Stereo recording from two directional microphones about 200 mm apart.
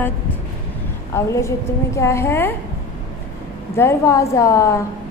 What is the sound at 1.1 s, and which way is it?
A woman's voice, 15° left (ahead or behind).